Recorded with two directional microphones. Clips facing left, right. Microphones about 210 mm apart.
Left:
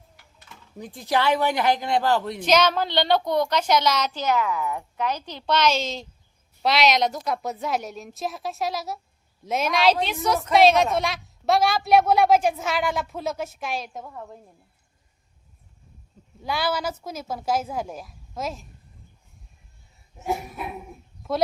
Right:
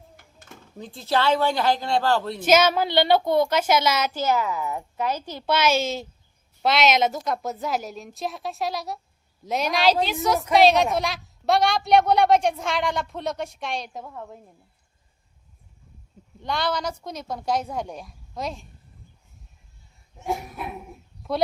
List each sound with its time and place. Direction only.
0.2 s a sound: 50° right (ahead or behind)
0.8 s speech: 15° left (ahead or behind)
2.4 s a woman's voice: 5° right (ahead or behind)
16.4 s a woman's voice: 5° left (ahead or behind)
20.1 s a woman's voice: centre (ahead or behind)